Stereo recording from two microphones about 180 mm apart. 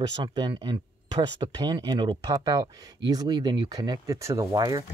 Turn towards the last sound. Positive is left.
turn(degrees=-20)  # may be behind; listen again after turning